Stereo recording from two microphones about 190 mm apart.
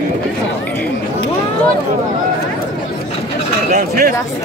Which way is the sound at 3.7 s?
45° right (ahead or behind).